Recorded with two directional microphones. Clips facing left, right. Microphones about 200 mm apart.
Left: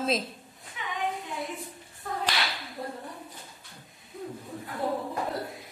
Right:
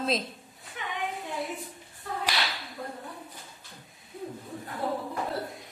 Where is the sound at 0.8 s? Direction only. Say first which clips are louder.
Even; 55° right (ahead or behind).